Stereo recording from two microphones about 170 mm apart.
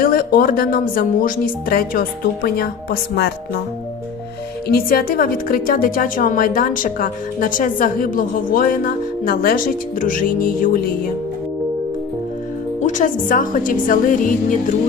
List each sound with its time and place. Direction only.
0.0 s a woman's voice: 60° left (ahead or behind)
4.7 s a woman's voice: 60° left (ahead or behind)
12.8 s a woman's voice: 45° left (ahead or behind)